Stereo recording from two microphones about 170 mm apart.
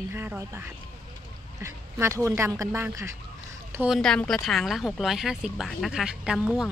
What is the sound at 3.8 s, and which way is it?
Speech, centre (ahead or behind).